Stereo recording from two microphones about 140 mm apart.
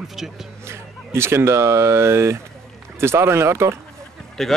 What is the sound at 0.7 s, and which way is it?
Speech, 20° right (ahead or behind).